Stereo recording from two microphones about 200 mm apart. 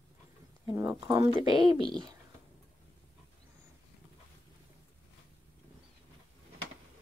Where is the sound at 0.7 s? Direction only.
15° right (ahead or behind).